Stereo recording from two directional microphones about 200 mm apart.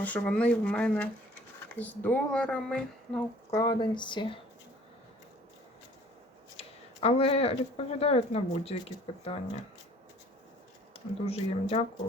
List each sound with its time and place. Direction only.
0.0 s speech: 5° left (ahead or behind)
3.5 s speech: 20° left (ahead or behind)
6.6 s speech: 30° left (ahead or behind)
10.9 s speech: 30° left (ahead or behind)